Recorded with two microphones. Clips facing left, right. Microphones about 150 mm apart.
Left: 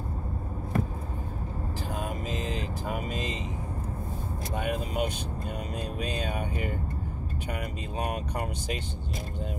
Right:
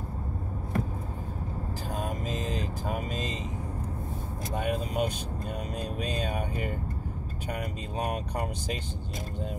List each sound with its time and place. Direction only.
2.0 s vehicle: 35° right (ahead or behind)
4.6 s speech: 35° right (ahead or behind)
7.4 s speech: 35° right (ahead or behind)